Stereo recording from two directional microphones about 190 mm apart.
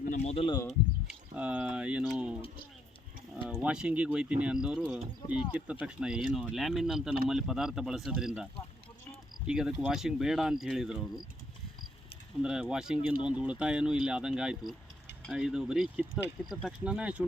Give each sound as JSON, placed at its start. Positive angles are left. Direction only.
{"t": 0.1, "sound": "a sound", "side_deg": 35}
{"t": 1.4, "sound": "speech", "side_deg": -5}
{"t": 3.4, "sound": "speech", "side_deg": -5}
{"t": 9.5, "sound": "speech", "side_deg": -5}
{"t": 12.4, "sound": "speech", "side_deg": -5}